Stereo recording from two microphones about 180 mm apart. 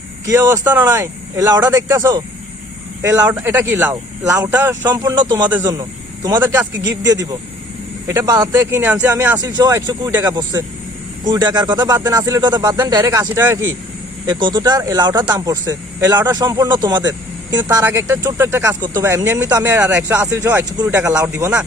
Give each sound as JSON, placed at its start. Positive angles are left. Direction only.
{"t": 0.3, "sound": "speech", "side_deg": -15}
{"t": 6.8, "sound": "speech", "side_deg": -20}